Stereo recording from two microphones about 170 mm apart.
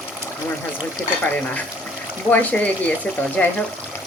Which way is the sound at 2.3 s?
10° left (ahead or behind).